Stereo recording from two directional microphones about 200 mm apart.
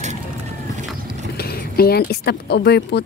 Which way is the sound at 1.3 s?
50° left (ahead or behind).